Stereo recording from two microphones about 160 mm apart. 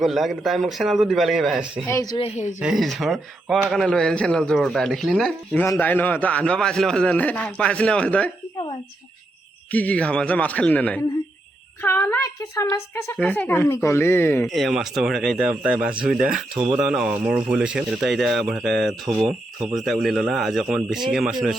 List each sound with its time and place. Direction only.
0.0 s speech: centre (ahead or behind)
1.9 s a woman's voice: 20° left (ahead or behind)
2.1 s speech: 40° left (ahead or behind)
2.6 s speech: 5° right (ahead or behind)
5.5 s a man's voice: 10° left (ahead or behind)
9.7 s a man's voice: 10° left (ahead or behind)
11.8 s a sound: 15° left (ahead or behind)
12.7 s a woman's voice: 20° left (ahead or behind)
13.1 s a man's voice: 10° left (ahead or behind)
14.4 s speech: centre (ahead or behind)
19.3 s speech: 30° right (ahead or behind)
19.7 s speech: centre (ahead or behind)